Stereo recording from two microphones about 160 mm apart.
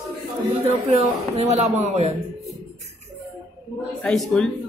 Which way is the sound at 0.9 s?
40° right (ahead or behind).